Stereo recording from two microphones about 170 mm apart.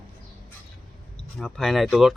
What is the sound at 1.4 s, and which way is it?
Speech, centre (ahead or behind).